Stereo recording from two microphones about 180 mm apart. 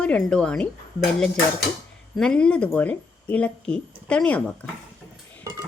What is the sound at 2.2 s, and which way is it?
Speech, 5° left (ahead or behind).